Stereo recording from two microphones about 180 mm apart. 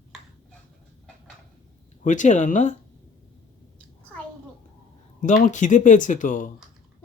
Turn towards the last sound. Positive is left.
turn(degrees=45)  # may be behind; listen again after turning